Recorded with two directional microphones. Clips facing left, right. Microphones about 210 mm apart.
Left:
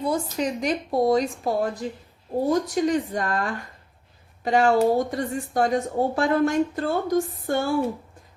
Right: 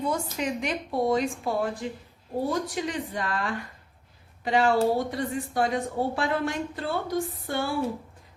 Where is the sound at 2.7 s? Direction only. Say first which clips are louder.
Left 8 dB; 45° left (ahead or behind).